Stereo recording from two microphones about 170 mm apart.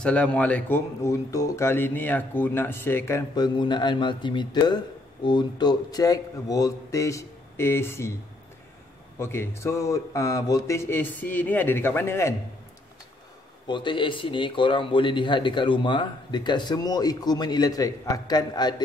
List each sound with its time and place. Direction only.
0.0 s speech: 5° left (ahead or behind)
9.2 s speech: 15° left (ahead or behind)
13.7 s a man's voice: 30° left (ahead or behind)